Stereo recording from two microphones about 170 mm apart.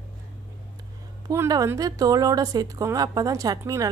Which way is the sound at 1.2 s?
20° right (ahead or behind).